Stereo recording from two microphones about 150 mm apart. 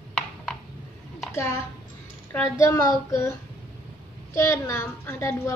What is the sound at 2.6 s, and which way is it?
Speech, 20° left (ahead or behind).